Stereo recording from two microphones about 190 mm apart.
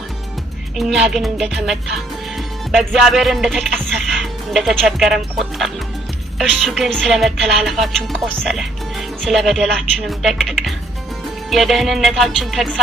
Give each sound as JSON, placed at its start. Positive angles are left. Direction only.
{"t": 0.8, "sound": "music", "side_deg": 0}